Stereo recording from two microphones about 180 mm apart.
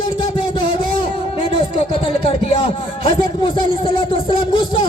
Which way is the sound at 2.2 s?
30° left (ahead or behind).